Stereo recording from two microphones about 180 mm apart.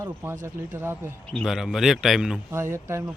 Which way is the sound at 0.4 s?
10° right (ahead or behind).